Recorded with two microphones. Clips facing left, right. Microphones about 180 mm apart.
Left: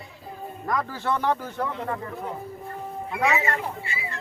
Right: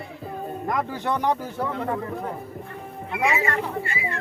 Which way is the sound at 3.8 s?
55° right (ahead or behind).